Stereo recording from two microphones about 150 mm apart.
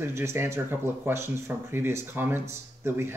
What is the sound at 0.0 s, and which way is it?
Speech, 15° right (ahead or behind).